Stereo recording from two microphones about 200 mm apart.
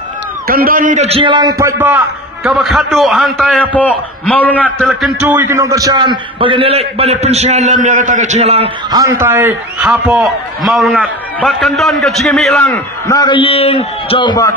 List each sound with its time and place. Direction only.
0.5 s a man's voice: 45° right (ahead or behind); by 2.0 s 10° right (ahead or behind)
2.4 s a man's voice: centre (ahead or behind)
5.3 s a man's voice: 10° right (ahead or behind); by 8.6 s 30° right (ahead or behind)
8.9 s a man's voice: 15° right (ahead or behind); by 14.5 s 20° left (ahead or behind)